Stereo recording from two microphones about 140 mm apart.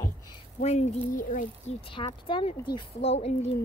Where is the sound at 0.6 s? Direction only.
55° left (ahead or behind).